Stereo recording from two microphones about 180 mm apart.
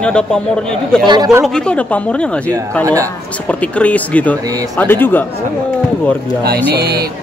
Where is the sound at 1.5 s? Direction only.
5° left (ahead or behind).